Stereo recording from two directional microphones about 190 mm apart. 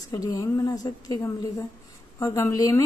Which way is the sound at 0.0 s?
20° left (ahead or behind).